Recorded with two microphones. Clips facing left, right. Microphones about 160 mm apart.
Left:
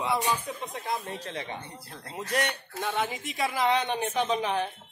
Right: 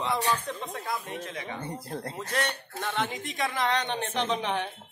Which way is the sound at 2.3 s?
15° left (ahead or behind).